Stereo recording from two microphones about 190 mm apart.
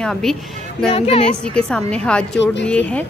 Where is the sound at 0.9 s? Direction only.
30° left (ahead or behind).